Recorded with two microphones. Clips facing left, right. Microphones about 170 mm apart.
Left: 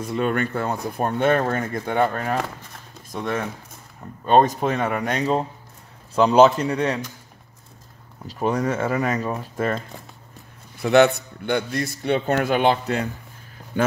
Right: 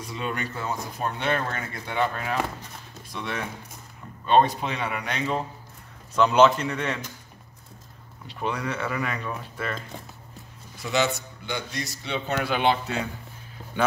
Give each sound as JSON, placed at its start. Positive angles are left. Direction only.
{"t": 0.0, "sound": "a man's voice", "side_deg": 55}
{"t": 8.3, "sound": "speech", "side_deg": 40}
{"t": 10.8, "sound": "speech", "side_deg": 60}